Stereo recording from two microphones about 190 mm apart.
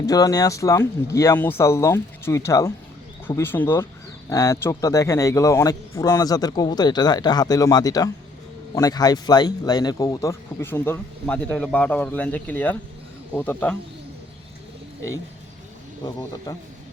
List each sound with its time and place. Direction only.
0.0 s a man's voice: 20° left (ahead or behind)
16.0 s a man's voice: 20° left (ahead or behind)